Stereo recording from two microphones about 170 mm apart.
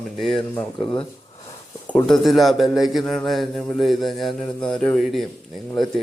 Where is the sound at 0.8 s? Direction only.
30° left (ahead or behind).